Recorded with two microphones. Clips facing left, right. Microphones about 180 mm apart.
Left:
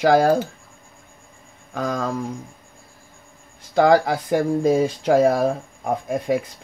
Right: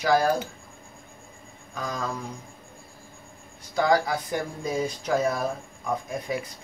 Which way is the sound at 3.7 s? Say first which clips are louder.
Left 7 dB; 60° left (ahead or behind).